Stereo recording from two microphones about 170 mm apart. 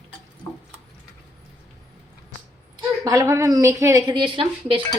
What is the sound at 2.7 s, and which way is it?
A woman's voice, 20° right (ahead or behind).